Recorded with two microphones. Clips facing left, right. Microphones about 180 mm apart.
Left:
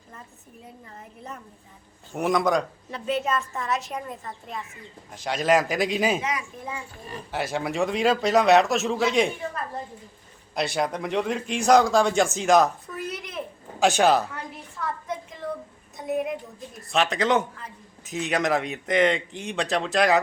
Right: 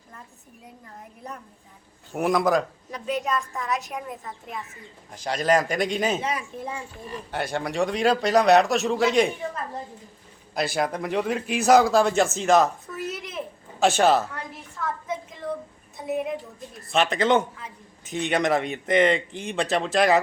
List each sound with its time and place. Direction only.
2.1 s a man's voice: centre (ahead or behind)
6.2 s a child's voice: 30° right (ahead or behind)
7.3 s a man's voice: centre (ahead or behind)
10.5 s a man's voice: centre (ahead or behind)
14.8 s a sound: centre (ahead or behind)
16.0 s a man's voice: centre (ahead or behind)